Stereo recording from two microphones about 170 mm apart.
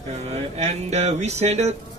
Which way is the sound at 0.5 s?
40° right (ahead or behind).